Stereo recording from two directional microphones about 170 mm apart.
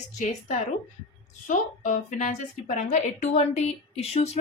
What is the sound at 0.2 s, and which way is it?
A woman's voice, 45° left (ahead or behind).